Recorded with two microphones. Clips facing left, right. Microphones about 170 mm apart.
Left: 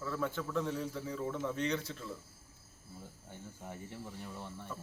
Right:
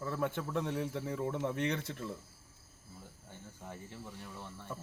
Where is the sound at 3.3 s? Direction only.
15° left (ahead or behind).